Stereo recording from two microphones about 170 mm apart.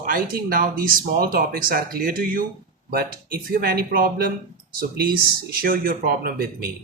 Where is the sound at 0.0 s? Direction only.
60° right (ahead or behind).